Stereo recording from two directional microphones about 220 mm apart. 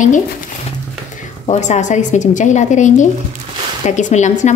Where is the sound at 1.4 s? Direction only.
30° left (ahead or behind).